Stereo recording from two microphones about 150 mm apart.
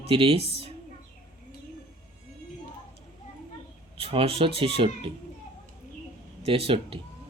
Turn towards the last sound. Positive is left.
turn(degrees=-40)  # may be behind; listen again after turning